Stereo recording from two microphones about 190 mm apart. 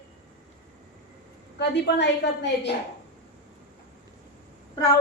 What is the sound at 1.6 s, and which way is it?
A woman's voice, 60° left (ahead or behind).